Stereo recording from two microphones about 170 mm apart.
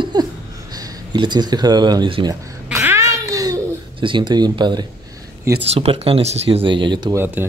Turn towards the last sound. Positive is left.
turn(degrees=-10)  # may be behind; listen again after turning